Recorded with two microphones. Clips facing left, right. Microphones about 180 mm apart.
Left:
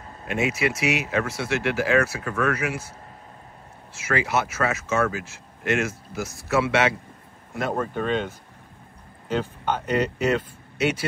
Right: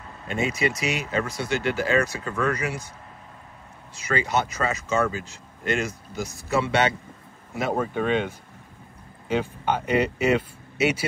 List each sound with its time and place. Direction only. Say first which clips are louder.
0.3 s speech: left 1 dB; 5° left (ahead or behind)
1.4 s speech: left 1 dB; 80° left
2.0 s speech: left 1 dB; 5° left (ahead or behind)
4.1 s speech: even; 5° left (ahead or behind)
7.5 s speech: right 1 dB; 5° right (ahead or behind)